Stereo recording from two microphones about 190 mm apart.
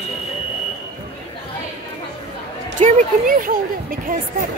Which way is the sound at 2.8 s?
45° right (ahead or behind).